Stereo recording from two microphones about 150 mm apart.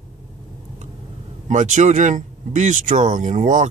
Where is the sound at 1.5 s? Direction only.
55° right (ahead or behind).